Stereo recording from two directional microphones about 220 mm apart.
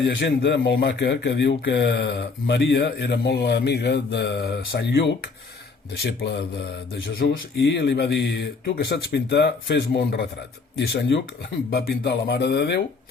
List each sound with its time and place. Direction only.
0.0 s speech: 50° left (ahead or behind)